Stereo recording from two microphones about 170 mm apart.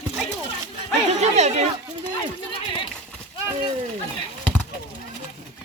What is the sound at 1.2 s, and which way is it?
Speech, 40° right (ahead or behind).